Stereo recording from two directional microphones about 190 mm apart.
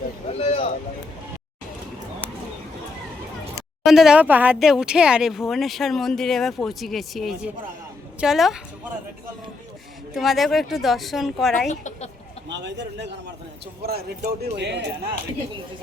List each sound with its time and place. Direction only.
0.3 s a sound: 35° left (ahead or behind)
3.8 s speech: centre (ahead or behind)
10.2 s speech: centre (ahead or behind)
11.7 s a woman's voice: 40° left (ahead or behind)
12.5 s a man's voice: 65° right (ahead or behind)